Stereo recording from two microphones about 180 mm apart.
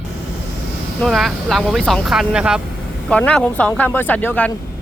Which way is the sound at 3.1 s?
5° left (ahead or behind).